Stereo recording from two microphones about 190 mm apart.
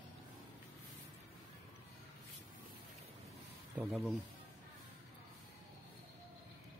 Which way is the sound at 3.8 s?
Centre (ahead or behind).